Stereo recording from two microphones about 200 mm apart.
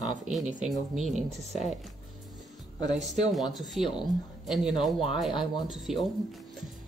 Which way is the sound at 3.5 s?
Centre (ahead or behind).